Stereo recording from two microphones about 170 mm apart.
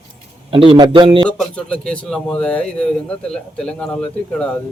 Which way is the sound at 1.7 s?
5° left (ahead or behind).